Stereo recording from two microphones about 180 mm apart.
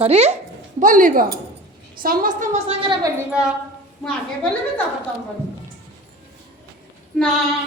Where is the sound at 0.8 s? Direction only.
45° right (ahead or behind).